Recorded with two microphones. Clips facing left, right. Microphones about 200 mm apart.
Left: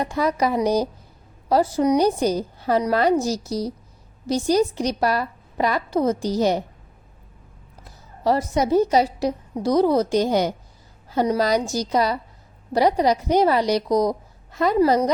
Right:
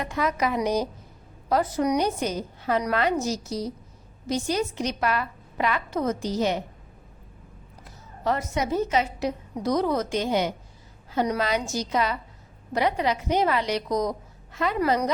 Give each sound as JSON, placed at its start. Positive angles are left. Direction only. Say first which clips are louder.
{"t": 0.0, "sound": "a woman's voice", "louder": "left 4 dB", "side_deg": 35}
{"t": 8.2, "sound": "a woman's voice", "louder": "left 6 dB", "side_deg": 35}